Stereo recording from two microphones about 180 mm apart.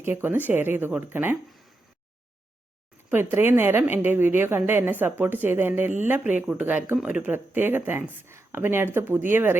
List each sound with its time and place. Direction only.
0.0 s a woman's voice: 10° right (ahead or behind)
3.1 s a woman's voice: 10° right (ahead or behind)